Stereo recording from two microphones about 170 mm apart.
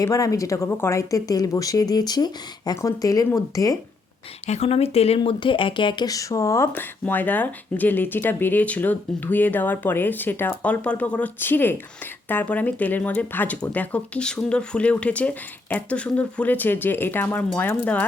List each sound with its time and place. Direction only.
0.0 s speech: 20° left (ahead or behind)
4.4 s speech: 40° left (ahead or behind); by 18.0 s 10° left (ahead or behind)